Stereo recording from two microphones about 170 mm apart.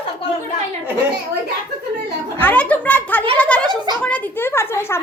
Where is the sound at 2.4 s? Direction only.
10° left (ahead or behind).